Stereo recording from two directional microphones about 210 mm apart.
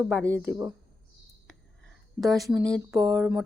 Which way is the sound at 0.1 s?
5° left (ahead or behind).